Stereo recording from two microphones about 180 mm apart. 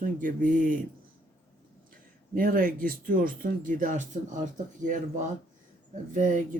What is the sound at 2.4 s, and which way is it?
Speech, 50° right (ahead or behind).